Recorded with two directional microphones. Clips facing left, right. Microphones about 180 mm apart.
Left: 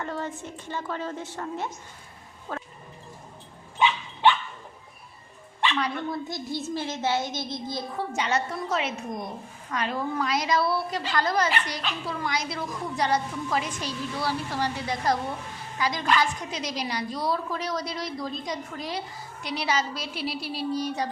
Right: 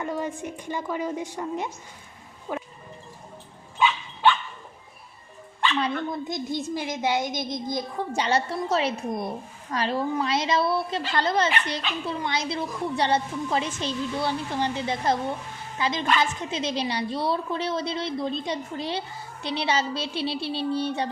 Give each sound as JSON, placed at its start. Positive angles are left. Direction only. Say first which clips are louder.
{"t": 0.0, "sound": "a woman's voice", "louder": "right 3 dB", "side_deg": -10}
{"t": 5.8, "sound": "a woman's voice", "louder": "right 2 dB", "side_deg": -20}
{"t": 8.1, "sound": "a woman's voice", "louder": "right 4 dB", "side_deg": -35}